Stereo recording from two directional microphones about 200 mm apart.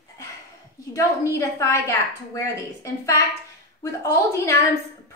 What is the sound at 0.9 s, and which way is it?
A woman's voice, 15° left (ahead or behind).